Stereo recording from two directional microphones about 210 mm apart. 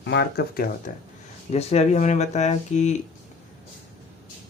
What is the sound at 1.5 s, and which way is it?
Speech, 30° left (ahead or behind).